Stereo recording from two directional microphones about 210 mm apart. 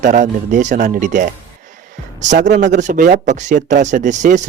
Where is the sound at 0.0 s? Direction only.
40° right (ahead or behind).